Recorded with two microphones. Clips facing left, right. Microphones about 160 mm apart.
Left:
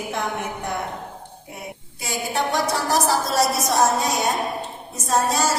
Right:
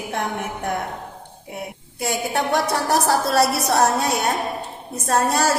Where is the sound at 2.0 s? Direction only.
55° right (ahead or behind).